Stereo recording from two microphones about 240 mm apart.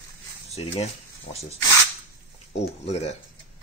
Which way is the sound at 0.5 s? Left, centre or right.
Left.